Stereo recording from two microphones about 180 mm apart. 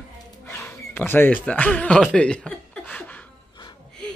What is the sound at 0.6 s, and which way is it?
A woman's voice, 10° left (ahead or behind).